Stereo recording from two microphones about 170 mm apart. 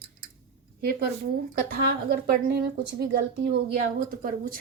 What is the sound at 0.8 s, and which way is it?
A woman's voice, 65° right (ahead or behind).